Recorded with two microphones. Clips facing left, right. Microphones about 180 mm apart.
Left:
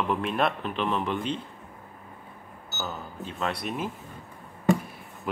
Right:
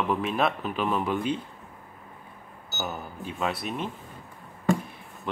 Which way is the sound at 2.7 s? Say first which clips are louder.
Right 1 dB; 15° right (ahead or behind).